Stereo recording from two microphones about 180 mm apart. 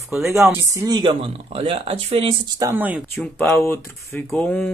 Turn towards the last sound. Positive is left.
turn(degrees=5)  # may be behind; listen again after turning